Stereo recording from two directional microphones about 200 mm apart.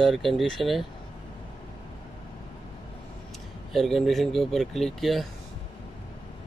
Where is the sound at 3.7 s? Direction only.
Centre (ahead or behind).